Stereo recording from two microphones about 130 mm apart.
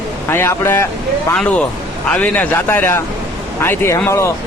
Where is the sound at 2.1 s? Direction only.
10° left (ahead or behind).